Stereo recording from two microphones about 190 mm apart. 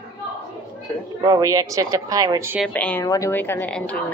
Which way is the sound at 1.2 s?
20° right (ahead or behind).